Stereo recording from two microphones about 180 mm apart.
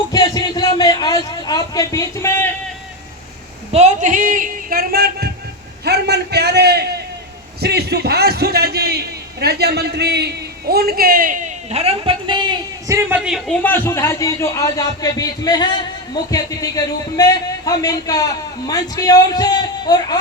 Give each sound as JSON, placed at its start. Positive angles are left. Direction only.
{"t": 0.1, "sound": "a sound", "side_deg": 20}
{"t": 3.7, "sound": "a man's voice", "side_deg": -40}
{"t": 13.1, "sound": "a man's voice", "side_deg": -5}
{"t": 13.6, "sound": "a man's voice", "side_deg": 10}